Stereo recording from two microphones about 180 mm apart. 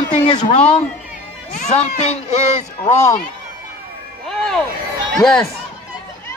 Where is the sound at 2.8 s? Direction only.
15° left (ahead or behind).